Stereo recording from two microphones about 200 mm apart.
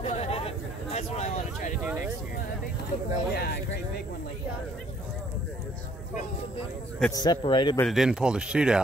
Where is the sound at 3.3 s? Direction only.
55° left (ahead or behind).